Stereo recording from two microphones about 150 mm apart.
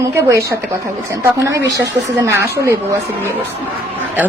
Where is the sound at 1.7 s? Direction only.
20° right (ahead or behind).